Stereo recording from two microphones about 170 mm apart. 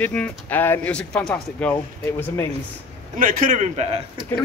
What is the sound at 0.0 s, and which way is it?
Speech, 10° left (ahead or behind).